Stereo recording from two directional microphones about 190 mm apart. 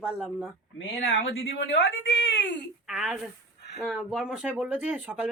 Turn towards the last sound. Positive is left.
turn(degrees=-10)  # may be behind; listen again after turning